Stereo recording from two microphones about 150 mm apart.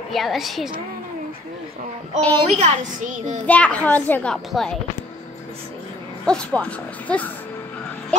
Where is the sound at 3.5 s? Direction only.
10° left (ahead or behind).